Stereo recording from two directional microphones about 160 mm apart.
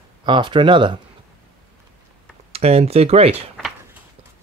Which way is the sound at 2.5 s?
40° right (ahead or behind).